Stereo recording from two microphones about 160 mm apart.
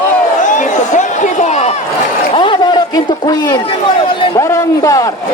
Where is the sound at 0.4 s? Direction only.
50° left (ahead or behind).